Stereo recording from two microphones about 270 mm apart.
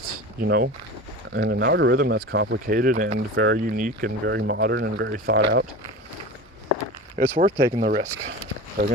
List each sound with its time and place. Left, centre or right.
0.3 s speech: right
7.2 s speech: right
8.8 s speech: right